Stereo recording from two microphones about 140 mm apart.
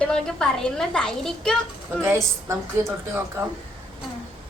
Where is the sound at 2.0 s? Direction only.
20° right (ahead or behind).